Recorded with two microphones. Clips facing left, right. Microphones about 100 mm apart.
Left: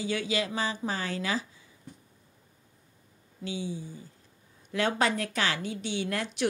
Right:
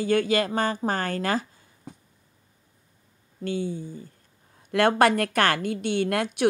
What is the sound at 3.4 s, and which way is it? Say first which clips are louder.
A woman's voice: right 6 dB; 50° right (ahead or behind).